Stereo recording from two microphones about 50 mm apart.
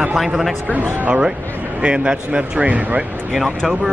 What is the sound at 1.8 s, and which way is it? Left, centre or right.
A man's voice, centre.